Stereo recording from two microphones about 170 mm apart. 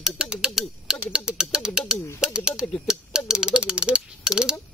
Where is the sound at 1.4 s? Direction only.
5° right (ahead or behind).